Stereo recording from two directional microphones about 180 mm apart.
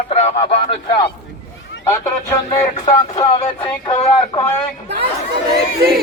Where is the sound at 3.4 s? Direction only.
30° left (ahead or behind).